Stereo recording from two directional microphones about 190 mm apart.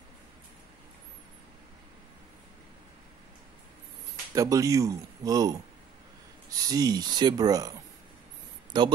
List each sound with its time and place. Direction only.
4.3 s speech: 15° right (ahead or behind)
6.7 s speech: 20° right (ahead or behind)
8.7 s speech: 25° right (ahead or behind)